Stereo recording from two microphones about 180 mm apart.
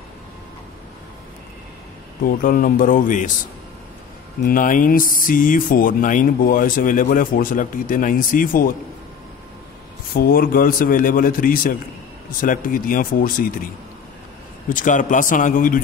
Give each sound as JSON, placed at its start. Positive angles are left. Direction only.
{"t": 2.2, "sound": "speech", "side_deg": 50}
{"t": 4.5, "sound": "speech", "side_deg": 50}
{"t": 10.1, "sound": "speech", "side_deg": 55}
{"t": 14.7, "sound": "speech", "side_deg": 45}